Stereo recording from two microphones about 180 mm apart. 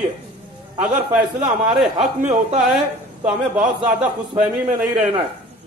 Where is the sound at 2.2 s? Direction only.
40° right (ahead or behind).